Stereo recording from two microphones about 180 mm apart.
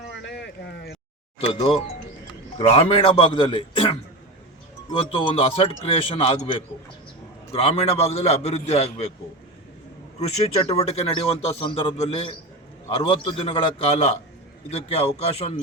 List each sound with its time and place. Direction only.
0.1 s a sound: 75° left (ahead or behind)
1.5 s a man's voice: 25° left (ahead or behind)
10.7 s a man's voice: 35° left (ahead or behind)